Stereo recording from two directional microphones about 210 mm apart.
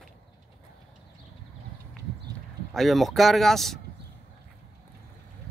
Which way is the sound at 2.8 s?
Centre (ahead or behind).